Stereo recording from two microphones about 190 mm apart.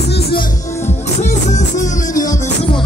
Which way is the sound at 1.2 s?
40° left (ahead or behind).